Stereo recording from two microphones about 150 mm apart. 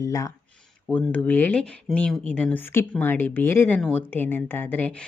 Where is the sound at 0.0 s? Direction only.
20° left (ahead or behind).